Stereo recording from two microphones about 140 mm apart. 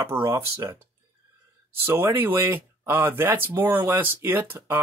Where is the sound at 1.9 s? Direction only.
15° right (ahead or behind).